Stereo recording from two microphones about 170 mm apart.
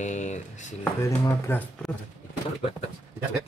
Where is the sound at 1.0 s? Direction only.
15° left (ahead or behind).